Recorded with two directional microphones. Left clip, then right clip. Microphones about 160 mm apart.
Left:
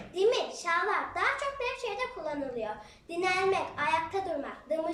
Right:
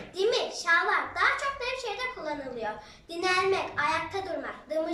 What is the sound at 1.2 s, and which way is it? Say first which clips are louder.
Speech: right 3 dB; 15° left (ahead or behind).